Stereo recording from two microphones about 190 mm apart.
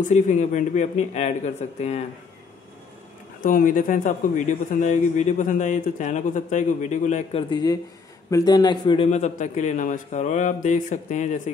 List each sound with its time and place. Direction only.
0.1 s a man's voice: 40° left (ahead or behind)
3.4 s a man's voice: 45° left (ahead or behind)
7.4 s a man's voice: 20° left (ahead or behind); by 11.4 s 40° left (ahead or behind)